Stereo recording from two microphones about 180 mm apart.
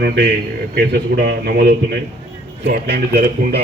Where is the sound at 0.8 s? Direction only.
65° right (ahead or behind).